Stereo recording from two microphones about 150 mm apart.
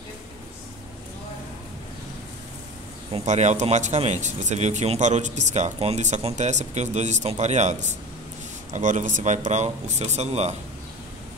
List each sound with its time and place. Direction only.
3.3 s speech: 50° right (ahead or behind)